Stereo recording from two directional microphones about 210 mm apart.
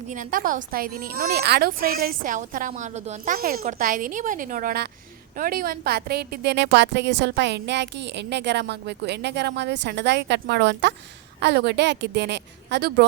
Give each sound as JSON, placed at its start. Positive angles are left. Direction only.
{"t": 0.1, "sound": "a woman's voice", "side_deg": -40}